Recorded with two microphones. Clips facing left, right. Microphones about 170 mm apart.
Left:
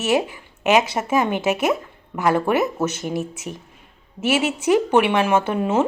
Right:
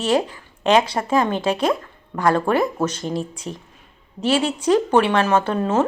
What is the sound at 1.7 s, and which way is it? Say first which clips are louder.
Speech: even; 10° left (ahead or behind).